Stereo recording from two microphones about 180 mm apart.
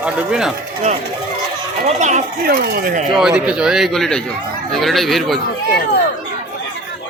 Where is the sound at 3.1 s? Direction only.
5° right (ahead or behind).